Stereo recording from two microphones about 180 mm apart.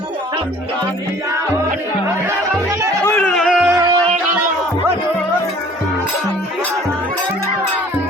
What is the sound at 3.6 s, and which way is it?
Music, 20° right (ahead or behind).